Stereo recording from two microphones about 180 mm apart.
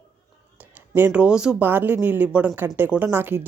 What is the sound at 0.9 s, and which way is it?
A woman's voice, 10° right (ahead or behind).